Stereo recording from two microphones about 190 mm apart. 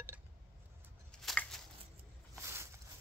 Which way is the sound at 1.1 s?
5° left (ahead or behind).